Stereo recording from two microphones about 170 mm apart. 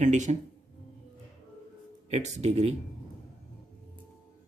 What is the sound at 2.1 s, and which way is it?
Speech, 40° right (ahead or behind).